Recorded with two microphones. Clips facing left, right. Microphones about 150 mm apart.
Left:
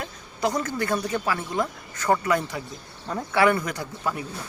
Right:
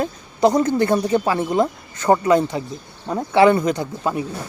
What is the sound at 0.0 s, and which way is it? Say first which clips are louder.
Speech: right 10 dB; 25° right (ahead or behind).